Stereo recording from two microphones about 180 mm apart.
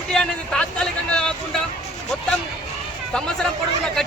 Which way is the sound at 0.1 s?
5° left (ahead or behind).